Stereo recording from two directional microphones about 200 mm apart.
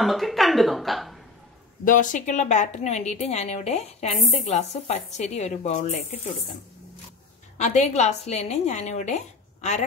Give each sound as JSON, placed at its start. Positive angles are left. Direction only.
{"t": 0.0, "sound": "speech", "side_deg": 0}
{"t": 1.9, "sound": "a woman's voice", "side_deg": 40}
{"t": 7.5, "sound": "a woman's voice", "side_deg": 35}